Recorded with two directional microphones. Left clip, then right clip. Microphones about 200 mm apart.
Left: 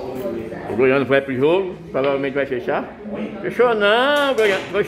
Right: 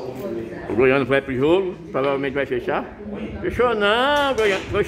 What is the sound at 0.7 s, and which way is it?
Speech, 20° right (ahead or behind).